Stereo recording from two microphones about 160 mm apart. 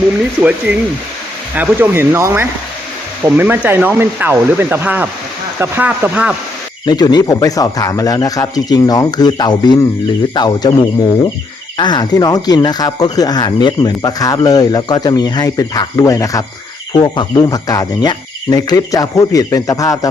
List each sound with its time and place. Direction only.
1.5 s speech: 15° right (ahead or behind)
6.8 s speech: 25° left (ahead or behind)
11.8 s speech: 25° left (ahead or behind)